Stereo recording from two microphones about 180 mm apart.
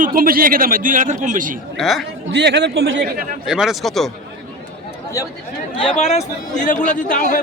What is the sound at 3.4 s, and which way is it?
Speech, 5° right (ahead or behind).